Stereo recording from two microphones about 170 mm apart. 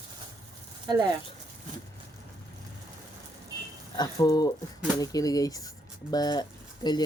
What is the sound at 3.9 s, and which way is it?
Speech, 25° left (ahead or behind).